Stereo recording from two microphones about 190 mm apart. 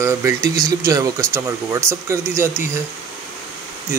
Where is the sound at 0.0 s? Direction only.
15° right (ahead or behind).